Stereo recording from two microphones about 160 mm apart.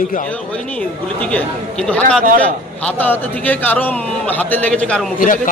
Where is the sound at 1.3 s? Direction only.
10° left (ahead or behind).